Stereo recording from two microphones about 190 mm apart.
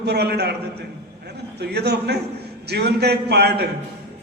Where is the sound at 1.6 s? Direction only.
60° right (ahead or behind).